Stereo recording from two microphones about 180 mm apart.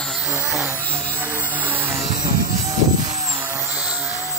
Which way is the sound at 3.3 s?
10° right (ahead or behind).